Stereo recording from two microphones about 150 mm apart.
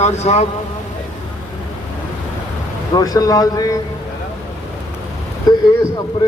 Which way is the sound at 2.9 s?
25° left (ahead or behind).